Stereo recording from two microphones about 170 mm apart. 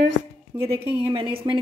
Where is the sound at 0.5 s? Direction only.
15° right (ahead or behind).